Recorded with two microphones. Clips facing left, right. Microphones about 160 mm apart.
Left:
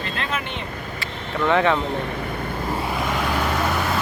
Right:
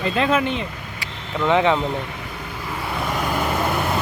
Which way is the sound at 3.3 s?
10° right (ahead or behind).